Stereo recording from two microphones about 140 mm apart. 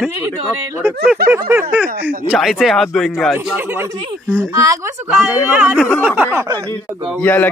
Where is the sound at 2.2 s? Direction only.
Centre (ahead or behind).